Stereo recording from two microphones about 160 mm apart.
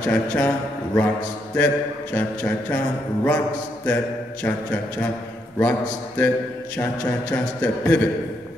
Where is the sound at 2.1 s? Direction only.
10° left (ahead or behind).